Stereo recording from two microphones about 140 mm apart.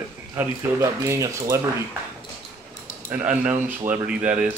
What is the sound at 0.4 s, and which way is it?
Speech, 20° right (ahead or behind).